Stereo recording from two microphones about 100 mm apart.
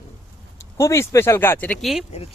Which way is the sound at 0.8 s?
30° left (ahead or behind).